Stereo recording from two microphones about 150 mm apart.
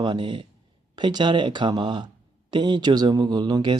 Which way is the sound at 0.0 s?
30° right (ahead or behind).